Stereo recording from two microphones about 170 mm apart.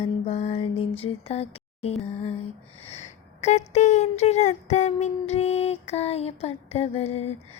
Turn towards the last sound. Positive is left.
turn(degrees=35)  # may be behind; listen again after turning